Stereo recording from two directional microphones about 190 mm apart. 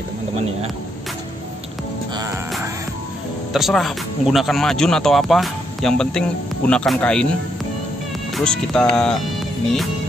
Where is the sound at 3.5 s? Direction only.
Centre (ahead or behind).